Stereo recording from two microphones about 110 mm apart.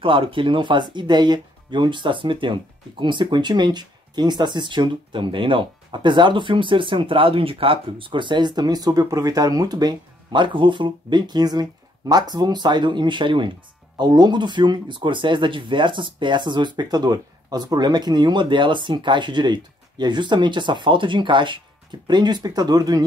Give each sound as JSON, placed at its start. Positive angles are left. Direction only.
{"t": 0.0, "sound": "speech", "side_deg": -50}